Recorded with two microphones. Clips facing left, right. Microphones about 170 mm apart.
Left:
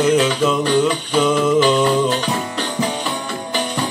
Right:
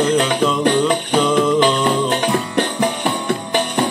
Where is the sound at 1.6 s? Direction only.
60° right (ahead or behind).